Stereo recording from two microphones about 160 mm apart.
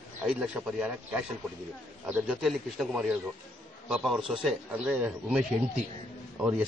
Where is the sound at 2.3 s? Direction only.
Centre (ahead or behind).